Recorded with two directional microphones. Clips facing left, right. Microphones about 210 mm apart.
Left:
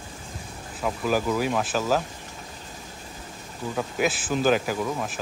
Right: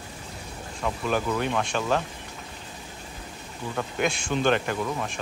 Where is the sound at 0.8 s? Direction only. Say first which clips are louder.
Left 2 dB; 5° left (ahead or behind).